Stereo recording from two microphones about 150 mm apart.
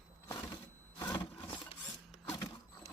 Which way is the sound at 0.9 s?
30° left (ahead or behind).